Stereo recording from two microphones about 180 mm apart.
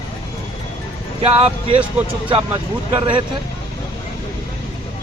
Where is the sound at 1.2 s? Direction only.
30° right (ahead or behind).